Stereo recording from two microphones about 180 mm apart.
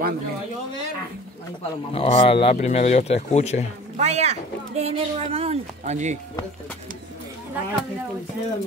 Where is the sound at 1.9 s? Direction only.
30° left (ahead or behind).